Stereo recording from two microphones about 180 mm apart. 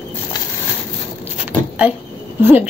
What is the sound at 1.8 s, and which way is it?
Speech, 10° right (ahead or behind).